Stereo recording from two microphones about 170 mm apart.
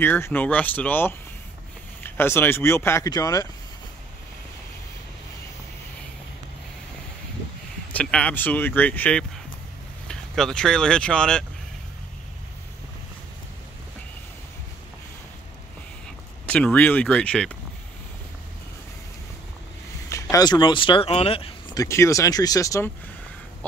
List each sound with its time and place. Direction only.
0.0 s speech: 10° left (ahead or behind)
7.9 s speech: 5° left (ahead or behind)
16.4 s speech: 10° left (ahead or behind)
20.1 s speech: 20° left (ahead or behind); by 21.5 s 35° left (ahead or behind)
21.7 s speech: 15° left (ahead or behind)